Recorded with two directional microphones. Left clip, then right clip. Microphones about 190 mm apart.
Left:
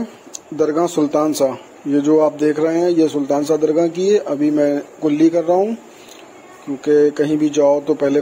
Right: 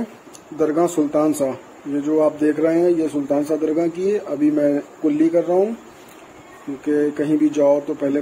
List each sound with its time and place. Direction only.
0.6 s a man's voice: 25° left (ahead or behind)
6.9 s a man's voice: 20° left (ahead or behind)